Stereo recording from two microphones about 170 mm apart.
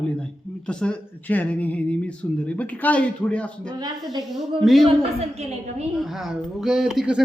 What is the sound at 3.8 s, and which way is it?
Speech, 25° right (ahead or behind).